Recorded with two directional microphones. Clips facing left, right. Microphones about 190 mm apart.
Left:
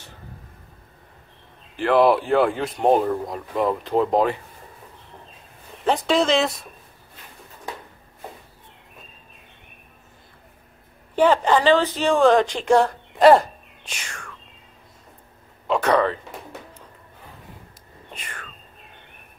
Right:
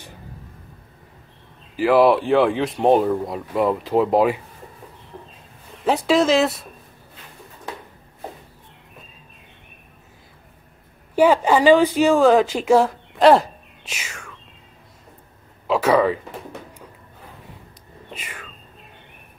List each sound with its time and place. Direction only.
1.8 s speech: 5° right (ahead or behind)
5.9 s speech: 5° right (ahead or behind)
11.1 s speech: 10° right (ahead or behind)
15.6 s speech: 5° right (ahead or behind)
18.1 s whispering: 5° right (ahead or behind)